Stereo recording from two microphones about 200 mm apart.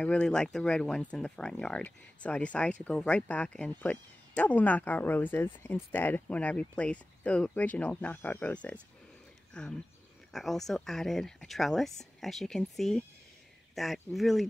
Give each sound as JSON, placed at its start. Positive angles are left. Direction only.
{"t": 0.0, "sound": "speech", "side_deg": 5}